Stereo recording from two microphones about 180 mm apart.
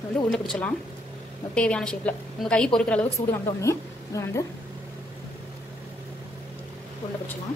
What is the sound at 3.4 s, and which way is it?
Speech, 15° left (ahead or behind).